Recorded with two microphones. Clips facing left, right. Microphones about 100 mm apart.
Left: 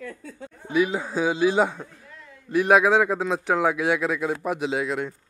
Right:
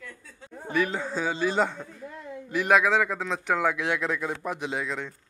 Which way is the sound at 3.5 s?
5° left (ahead or behind).